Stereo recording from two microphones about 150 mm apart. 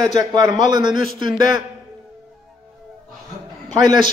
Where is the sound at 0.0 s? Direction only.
25° right (ahead or behind).